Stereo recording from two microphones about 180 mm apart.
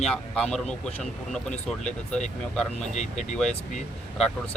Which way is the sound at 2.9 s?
40° left (ahead or behind).